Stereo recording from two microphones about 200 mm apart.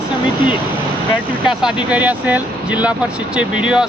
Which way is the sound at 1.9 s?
10° right (ahead or behind).